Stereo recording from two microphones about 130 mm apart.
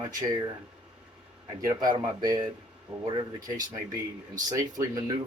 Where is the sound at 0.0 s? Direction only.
30° right (ahead or behind).